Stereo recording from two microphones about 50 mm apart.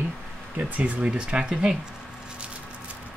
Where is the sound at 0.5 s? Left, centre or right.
Right.